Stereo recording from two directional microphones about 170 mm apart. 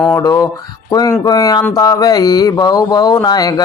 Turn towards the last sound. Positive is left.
turn(degrees=25)  # may be behind; listen again after turning